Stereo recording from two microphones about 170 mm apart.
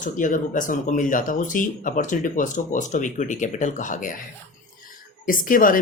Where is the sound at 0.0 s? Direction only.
50° left (ahead or behind).